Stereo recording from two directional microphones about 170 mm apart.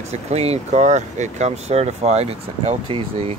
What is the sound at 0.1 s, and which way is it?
Speech, 40° right (ahead or behind).